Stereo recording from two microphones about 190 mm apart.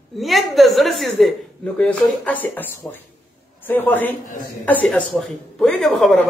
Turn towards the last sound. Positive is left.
turn(degrees=0)  # may be behind; listen again after turning